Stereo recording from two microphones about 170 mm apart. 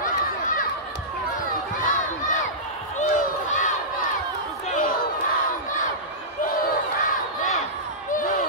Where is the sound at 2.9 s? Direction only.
45° left (ahead or behind).